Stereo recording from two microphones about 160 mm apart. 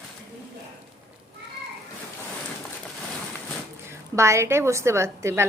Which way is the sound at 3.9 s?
15° right (ahead or behind).